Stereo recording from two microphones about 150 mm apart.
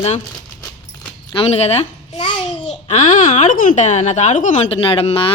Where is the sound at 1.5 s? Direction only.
45° left (ahead or behind).